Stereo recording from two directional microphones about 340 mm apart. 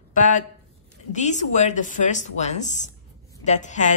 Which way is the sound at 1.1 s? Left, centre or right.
Left.